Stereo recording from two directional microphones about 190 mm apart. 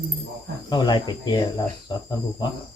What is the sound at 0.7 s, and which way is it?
Speech, 20° left (ahead or behind).